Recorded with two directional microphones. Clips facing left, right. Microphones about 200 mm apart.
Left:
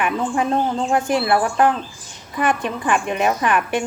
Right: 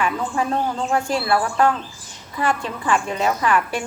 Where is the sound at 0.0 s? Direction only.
20° left (ahead or behind).